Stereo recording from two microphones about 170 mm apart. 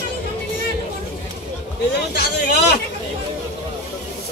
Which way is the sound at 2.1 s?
75° left (ahead or behind).